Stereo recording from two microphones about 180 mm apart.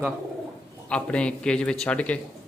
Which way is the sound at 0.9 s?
5° left (ahead or behind).